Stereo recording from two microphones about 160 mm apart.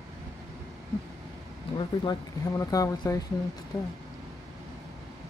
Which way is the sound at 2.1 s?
20° left (ahead or behind).